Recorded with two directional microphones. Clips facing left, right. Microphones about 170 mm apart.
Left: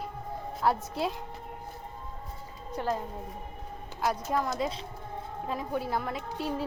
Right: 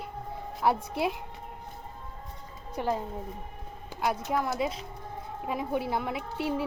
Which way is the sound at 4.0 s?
5° right (ahead or behind).